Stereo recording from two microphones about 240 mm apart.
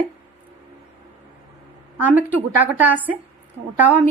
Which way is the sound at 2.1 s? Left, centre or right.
Centre.